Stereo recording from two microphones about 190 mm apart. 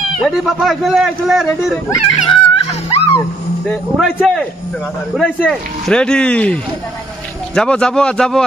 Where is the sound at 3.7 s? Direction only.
5° left (ahead or behind).